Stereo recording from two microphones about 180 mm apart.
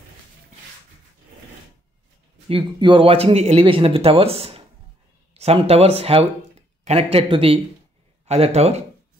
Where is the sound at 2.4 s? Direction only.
25° right (ahead or behind).